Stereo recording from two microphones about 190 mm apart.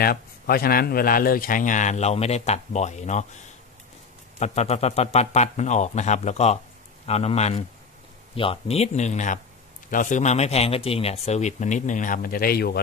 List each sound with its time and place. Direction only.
0.0 s a man's voice: 50° left (ahead or behind)
4.4 s a man's voice: 35° left (ahead or behind); by 12.8 s 55° left (ahead or behind)